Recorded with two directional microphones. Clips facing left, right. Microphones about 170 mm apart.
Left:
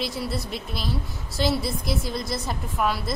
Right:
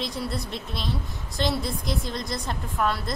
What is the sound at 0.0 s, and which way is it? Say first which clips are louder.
A woman's voice: left 1 dB; 5° left (ahead or behind).